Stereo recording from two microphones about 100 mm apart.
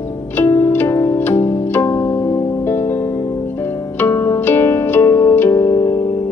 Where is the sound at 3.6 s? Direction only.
25° left (ahead or behind).